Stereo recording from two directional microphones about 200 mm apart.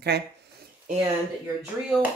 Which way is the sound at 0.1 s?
55° right (ahead or behind).